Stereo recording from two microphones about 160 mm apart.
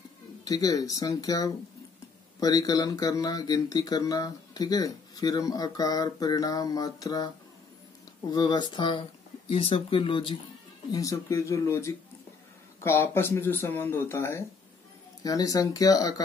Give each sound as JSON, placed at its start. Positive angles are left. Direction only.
{"t": 0.5, "sound": "speech", "side_deg": 20}
{"t": 8.3, "sound": "speech", "side_deg": 25}
{"t": 10.9, "sound": "speech", "side_deg": 20}